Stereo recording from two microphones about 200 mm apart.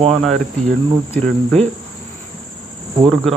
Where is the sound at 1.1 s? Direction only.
5° left (ahead or behind).